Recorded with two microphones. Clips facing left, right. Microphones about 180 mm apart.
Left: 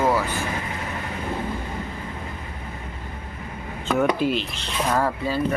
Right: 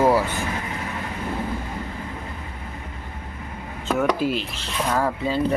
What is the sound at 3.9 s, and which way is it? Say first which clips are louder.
Speech: left 1 dB; 5° right (ahead or behind).